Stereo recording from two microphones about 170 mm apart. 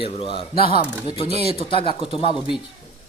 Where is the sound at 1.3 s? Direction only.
40° right (ahead or behind).